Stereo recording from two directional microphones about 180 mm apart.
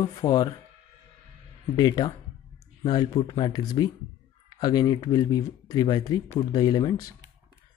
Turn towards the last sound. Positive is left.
turn(degrees=20)  # may be behind; listen again after turning